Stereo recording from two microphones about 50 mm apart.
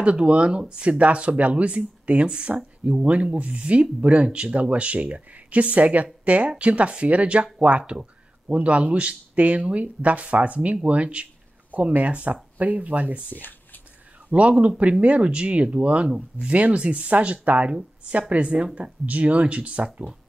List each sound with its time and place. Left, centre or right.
0.0 s speech: right
13.3 s speech: left
14.3 s speech: right